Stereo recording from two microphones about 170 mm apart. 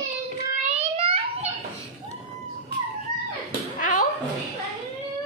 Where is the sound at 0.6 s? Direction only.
35° right (ahead or behind).